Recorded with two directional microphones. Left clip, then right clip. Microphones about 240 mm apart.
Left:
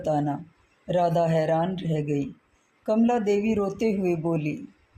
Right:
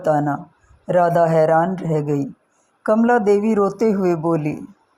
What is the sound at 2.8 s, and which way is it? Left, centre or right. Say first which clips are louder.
Speech: right 8 dB; right.